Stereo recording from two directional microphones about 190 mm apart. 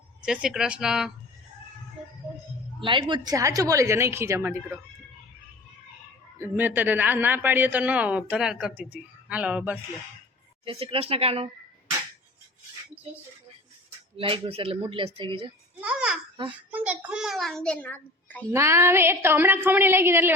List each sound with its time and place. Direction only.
0.2 s a child's voice: 5° right (ahead or behind)
2.8 s speech: 25° right (ahead or behind)
6.4 s speech: 10° right (ahead or behind)
10.7 s speech: 30° right (ahead or behind)
14.2 s speech: 30° right (ahead or behind)
15.8 s babbling: 5° right (ahead or behind)
16.7 s a child's voice: 5° right (ahead or behind); by 18.4 s 10° left (ahead or behind)
18.5 s speech: 15° right (ahead or behind)